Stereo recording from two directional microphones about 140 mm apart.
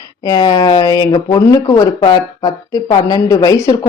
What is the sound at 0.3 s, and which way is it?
Speech, 30° left (ahead or behind).